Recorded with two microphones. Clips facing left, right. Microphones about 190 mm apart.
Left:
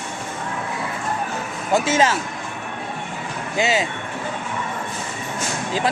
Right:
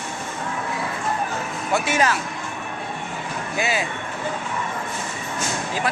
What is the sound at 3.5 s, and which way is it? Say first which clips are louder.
Speech: left 4 dB; 25° left (ahead or behind).